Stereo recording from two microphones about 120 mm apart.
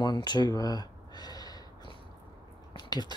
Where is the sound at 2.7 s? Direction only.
35° left (ahead or behind).